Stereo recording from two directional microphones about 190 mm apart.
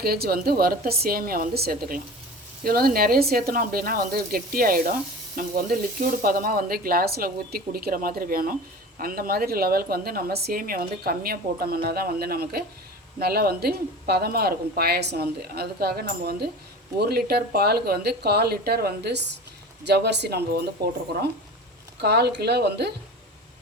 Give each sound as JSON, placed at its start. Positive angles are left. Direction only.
{"t": 0.0, "sound": "a woman's voice", "side_deg": -55}
{"t": 22.0, "sound": "a woman's voice", "side_deg": -60}